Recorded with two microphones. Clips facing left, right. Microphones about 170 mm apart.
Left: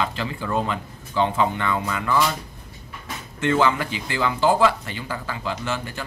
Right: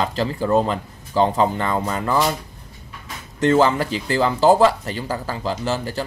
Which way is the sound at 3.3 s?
35° right (ahead or behind).